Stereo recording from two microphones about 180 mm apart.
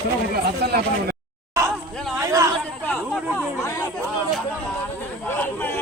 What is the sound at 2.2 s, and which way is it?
Chatter, 15° right (ahead or behind).